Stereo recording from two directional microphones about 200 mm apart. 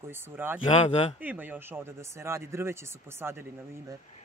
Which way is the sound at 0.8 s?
30° left (ahead or behind).